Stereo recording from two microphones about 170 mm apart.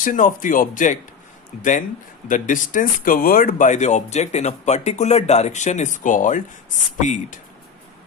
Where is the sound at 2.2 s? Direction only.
50° left (ahead or behind).